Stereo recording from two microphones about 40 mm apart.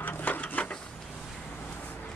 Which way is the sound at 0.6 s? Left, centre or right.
Left.